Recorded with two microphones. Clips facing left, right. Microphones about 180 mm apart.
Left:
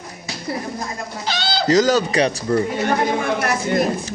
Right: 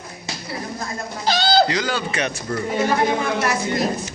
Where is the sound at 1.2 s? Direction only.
40° right (ahead or behind).